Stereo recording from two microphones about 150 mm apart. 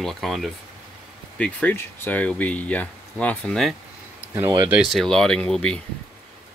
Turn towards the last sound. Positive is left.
turn(degrees=5)  # may be behind; listen again after turning